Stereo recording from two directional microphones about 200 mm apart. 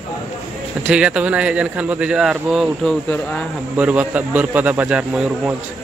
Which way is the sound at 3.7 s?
5° right (ahead or behind).